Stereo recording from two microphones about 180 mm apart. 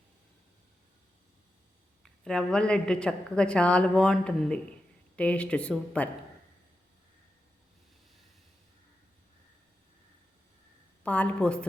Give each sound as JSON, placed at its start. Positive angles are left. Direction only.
{"t": 2.2, "sound": "a woman's voice", "side_deg": 5}
{"t": 11.0, "sound": "speech", "side_deg": 10}